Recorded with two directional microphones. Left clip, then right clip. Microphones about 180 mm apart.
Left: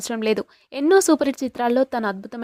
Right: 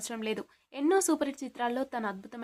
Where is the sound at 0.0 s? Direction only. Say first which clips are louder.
Left 13 dB; 45° left (ahead or behind).